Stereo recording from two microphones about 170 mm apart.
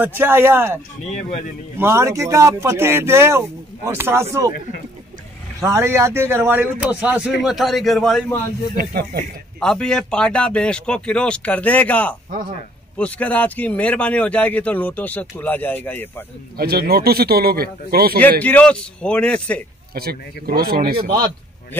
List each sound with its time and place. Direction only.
0.0 s speech: 10° right (ahead or behind)
1.8 s speech: 15° right (ahead or behind)
5.6 s a man's voice: 15° right (ahead or behind); by 8.2 s centre (ahead or behind)
8.7 s speech: 65° right (ahead or behind)
9.6 s speech: 5° left (ahead or behind)
16.5 s speech: 65° right (ahead or behind)
18.4 s speech: 5° left (ahead or behind)
19.9 s speech: 65° right (ahead or behind)